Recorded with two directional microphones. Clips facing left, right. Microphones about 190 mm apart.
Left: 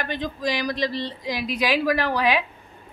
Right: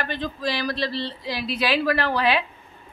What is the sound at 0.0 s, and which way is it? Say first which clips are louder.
A man's voice: left 1 dB; 15° left (ahead or behind).